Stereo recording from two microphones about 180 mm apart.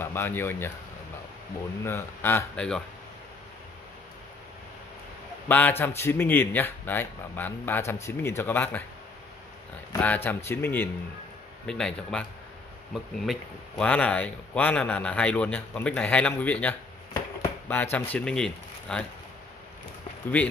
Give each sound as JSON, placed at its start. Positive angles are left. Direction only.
{"t": 0.0, "sound": "speech", "side_deg": 10}
{"t": 1.9, "sound": "speech", "side_deg": 15}
{"t": 5.5, "sound": "speech", "side_deg": 10}
{"t": 9.9, "sound": "speech", "side_deg": 10}
{"t": 17.1, "sound": "chop", "side_deg": 10}
{"t": 17.9, "sound": "speech", "side_deg": 10}